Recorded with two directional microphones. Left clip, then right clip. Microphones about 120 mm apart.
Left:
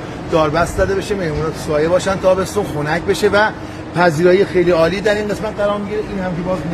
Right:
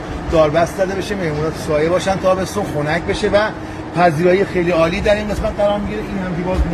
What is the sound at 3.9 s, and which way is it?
A man's voice, 45° left (ahead or behind).